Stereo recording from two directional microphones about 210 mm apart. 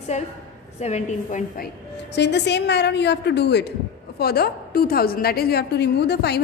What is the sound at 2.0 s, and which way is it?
A woman's voice, 55° left (ahead or behind).